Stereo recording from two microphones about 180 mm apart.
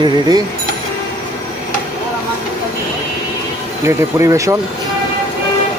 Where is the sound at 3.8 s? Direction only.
15° right (ahead or behind).